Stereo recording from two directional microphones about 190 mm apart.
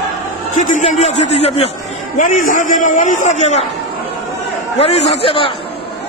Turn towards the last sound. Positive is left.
turn(degrees=30)  # may be behind; listen again after turning